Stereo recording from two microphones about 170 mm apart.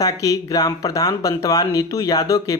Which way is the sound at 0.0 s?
20° left (ahead or behind).